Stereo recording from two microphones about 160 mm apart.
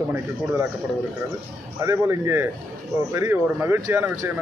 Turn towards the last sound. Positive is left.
turn(degrees=-15)  # may be behind; listen again after turning